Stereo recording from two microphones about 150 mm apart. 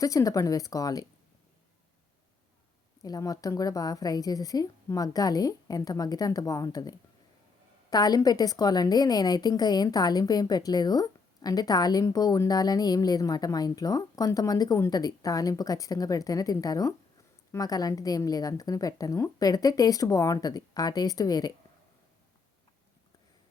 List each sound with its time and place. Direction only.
0.0 s a woman's voice: 20° left (ahead or behind)
3.0 s a woman's voice: 25° left (ahead or behind)